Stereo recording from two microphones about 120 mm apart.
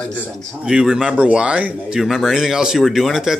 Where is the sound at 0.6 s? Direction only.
5° right (ahead or behind).